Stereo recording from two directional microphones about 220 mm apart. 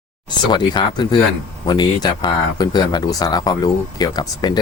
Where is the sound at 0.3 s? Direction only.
20° left (ahead or behind).